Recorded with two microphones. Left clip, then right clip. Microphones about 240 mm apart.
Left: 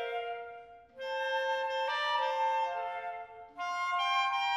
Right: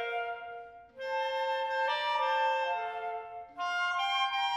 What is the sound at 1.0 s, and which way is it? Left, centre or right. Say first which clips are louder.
Music: right 1 dB; left.